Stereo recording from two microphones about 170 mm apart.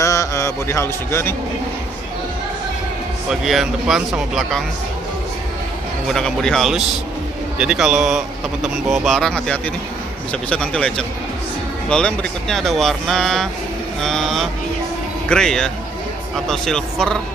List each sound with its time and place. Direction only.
0.0 s a sound: 20° left (ahead or behind)
3.3 s speech: centre (ahead or behind)
6.0 s speech: 5° left (ahead or behind)